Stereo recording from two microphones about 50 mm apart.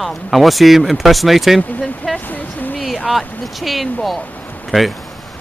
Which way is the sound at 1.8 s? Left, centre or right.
Centre.